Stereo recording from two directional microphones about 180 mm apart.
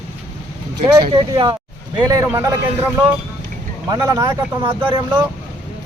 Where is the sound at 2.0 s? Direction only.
15° right (ahead or behind).